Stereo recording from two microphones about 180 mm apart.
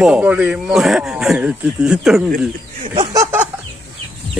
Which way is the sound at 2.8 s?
30° right (ahead or behind).